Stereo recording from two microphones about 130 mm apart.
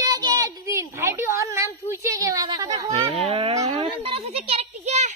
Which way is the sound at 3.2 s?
45° right (ahead or behind).